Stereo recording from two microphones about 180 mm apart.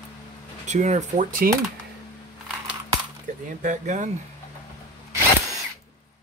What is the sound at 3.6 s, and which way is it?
Speech, 45° right (ahead or behind).